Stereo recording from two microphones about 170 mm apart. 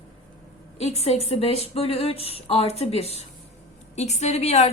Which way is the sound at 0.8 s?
40° left (ahead or behind).